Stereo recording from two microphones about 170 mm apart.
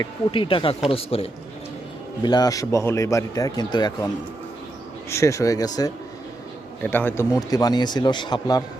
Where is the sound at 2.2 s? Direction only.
25° left (ahead or behind).